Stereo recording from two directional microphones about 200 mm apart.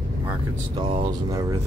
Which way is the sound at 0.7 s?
25° right (ahead or behind).